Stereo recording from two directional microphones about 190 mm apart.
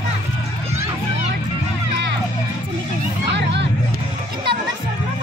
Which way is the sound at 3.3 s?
65° right (ahead or behind).